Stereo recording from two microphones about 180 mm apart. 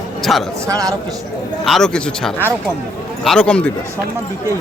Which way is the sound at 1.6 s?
5° left (ahead or behind).